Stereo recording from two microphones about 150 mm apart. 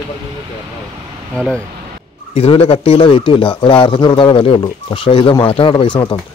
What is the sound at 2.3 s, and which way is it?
A man's voice, 40° left (ahead or behind).